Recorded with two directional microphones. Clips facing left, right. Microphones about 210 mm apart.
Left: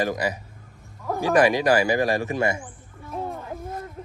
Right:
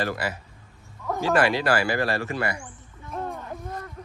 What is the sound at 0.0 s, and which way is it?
Speech, 15° left (ahead or behind).